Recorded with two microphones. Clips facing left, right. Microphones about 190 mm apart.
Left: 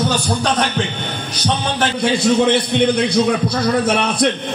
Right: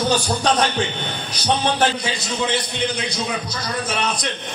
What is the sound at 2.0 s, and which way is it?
A man's voice, 55° left (ahead or behind).